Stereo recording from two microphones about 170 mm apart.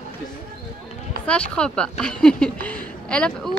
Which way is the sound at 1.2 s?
5° left (ahead or behind).